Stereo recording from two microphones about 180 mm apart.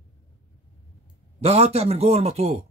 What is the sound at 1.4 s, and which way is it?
Speech, 35° right (ahead or behind).